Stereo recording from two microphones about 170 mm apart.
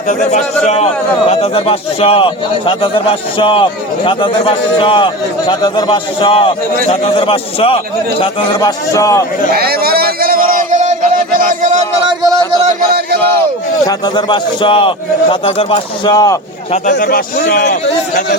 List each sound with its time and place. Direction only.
0.1 s a man's voice: 45° left (ahead or behind)
8.2 s a man's voice: 20° left (ahead or behind)
9.6 s a sound: 65° right (ahead or behind)
12.0 s a sound: 20° right (ahead or behind)
13.8 s a man's voice: 25° left (ahead or behind)
17.0 s a man's voice: 60° left (ahead or behind); by 18.3 s 80° left